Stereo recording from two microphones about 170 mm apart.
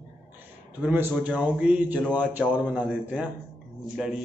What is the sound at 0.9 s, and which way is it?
A man's voice, 10° right (ahead or behind).